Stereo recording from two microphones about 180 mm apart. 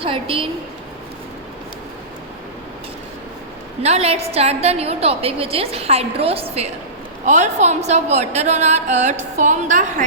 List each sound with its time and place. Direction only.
0.0 s a woman's voice: 30° right (ahead or behind)
3.8 s a woman's voice: 35° right (ahead or behind)